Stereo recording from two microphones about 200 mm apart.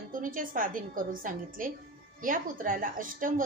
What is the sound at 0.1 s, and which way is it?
A woman's voice, 40° right (ahead or behind).